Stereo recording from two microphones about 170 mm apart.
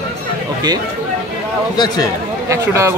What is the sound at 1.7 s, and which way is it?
Speech, 25° left (ahead or behind).